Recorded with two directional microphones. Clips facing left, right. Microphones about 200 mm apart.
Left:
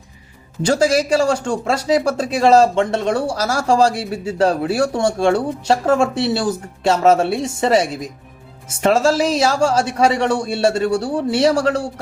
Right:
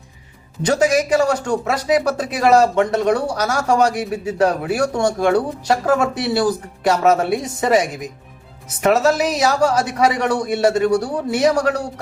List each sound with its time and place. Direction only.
0.6 s speech: 30° left (ahead or behind)